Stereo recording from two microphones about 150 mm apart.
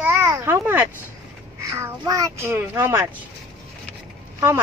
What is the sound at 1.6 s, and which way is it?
A child's voice, 20° right (ahead or behind).